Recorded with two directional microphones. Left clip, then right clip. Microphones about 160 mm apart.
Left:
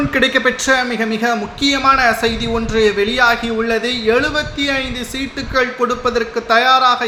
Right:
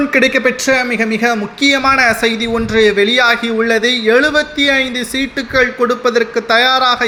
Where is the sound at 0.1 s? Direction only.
15° right (ahead or behind).